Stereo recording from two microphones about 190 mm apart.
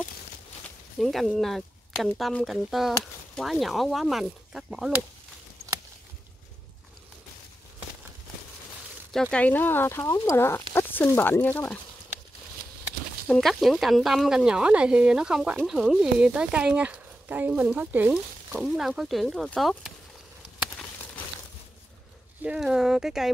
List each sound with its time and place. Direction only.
0.9 s speech: centre (ahead or behind)
9.1 s speech: 5° left (ahead or behind)
13.3 s speech: centre (ahead or behind)
22.4 s speech: 5° right (ahead or behind)